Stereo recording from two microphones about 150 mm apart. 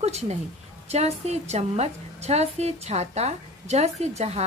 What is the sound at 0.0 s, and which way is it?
A woman's voice, 45° right (ahead or behind).